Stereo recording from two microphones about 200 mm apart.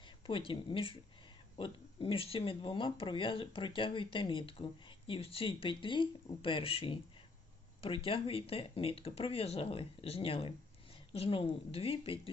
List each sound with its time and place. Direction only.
0.3 s speech: 25° left (ahead or behind)